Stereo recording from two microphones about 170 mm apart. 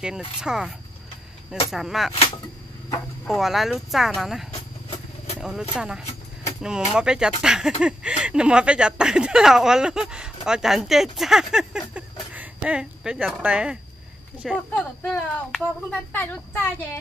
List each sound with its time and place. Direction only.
0.4 s speech: 5° right (ahead or behind)
3.3 s speech: centre (ahead or behind)
4.5 s vehicle: 35° left (ahead or behind)
5.4 s speech: 5° right (ahead or behind); by 17.0 s 10° left (ahead or behind)